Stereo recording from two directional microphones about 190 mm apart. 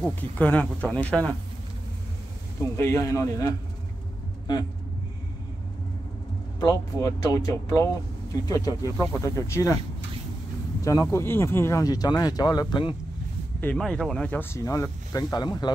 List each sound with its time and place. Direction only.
0.0 s speech: 10° left (ahead or behind)
2.8 s speech: 15° left (ahead or behind)
6.6 s speech: 20° left (ahead or behind)
10.8 s speech: 15° left (ahead or behind)
13.6 s speech: 5° left (ahead or behind); by 15.7 s 20° left (ahead or behind)